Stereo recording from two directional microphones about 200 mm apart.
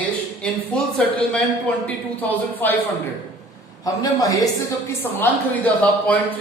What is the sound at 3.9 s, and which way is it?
A man's voice, 15° left (ahead or behind).